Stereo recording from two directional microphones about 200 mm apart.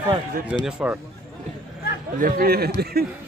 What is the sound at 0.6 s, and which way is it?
Speech, 10° right (ahead or behind).